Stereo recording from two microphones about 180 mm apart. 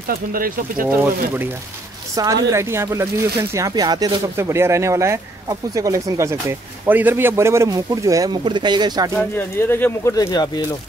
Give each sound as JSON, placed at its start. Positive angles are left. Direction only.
{"t": 0.1, "sound": "speech", "side_deg": -50}
{"t": 0.8, "sound": "a man's voice", "side_deg": -10}
{"t": 9.3, "sound": "speech", "side_deg": 10}
{"t": 10.1, "sound": "speech", "side_deg": 20}